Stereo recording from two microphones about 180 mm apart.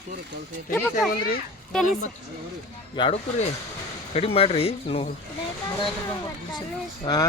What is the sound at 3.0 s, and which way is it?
Speech, 30° left (ahead or behind).